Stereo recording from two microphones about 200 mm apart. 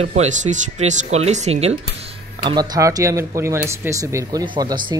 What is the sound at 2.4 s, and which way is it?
Speech, 20° right (ahead or behind).